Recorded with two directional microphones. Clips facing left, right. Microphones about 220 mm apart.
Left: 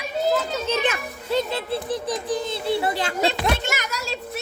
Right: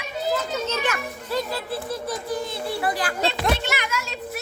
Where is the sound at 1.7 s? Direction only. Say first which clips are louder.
Left 4 dB; 20° left (ahead or behind).